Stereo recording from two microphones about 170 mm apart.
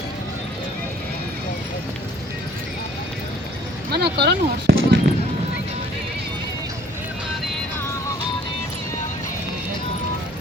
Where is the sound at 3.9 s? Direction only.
70° right (ahead or behind).